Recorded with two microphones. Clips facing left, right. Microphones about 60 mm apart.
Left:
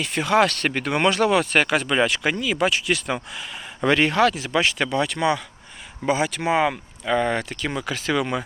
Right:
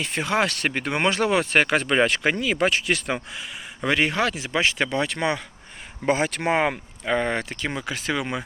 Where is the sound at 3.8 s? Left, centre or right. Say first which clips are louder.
Left 4 dB; centre.